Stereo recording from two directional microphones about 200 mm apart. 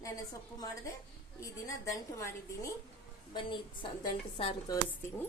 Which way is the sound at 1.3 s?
15° left (ahead or behind).